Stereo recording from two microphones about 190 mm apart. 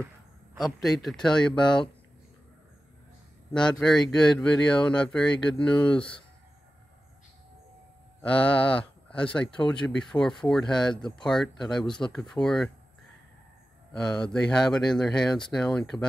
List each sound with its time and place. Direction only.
0.6 s speech: centre (ahead or behind)
3.8 s speech: 5° left (ahead or behind)
8.2 s speech: 5° left (ahead or behind)
13.9 s speech: 5° left (ahead or behind)